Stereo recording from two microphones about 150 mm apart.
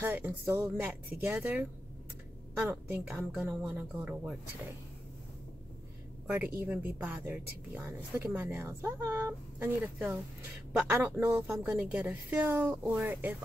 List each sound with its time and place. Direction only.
0.0 s speech: 15° right (ahead or behind)
6.2 s speech: 15° right (ahead or behind)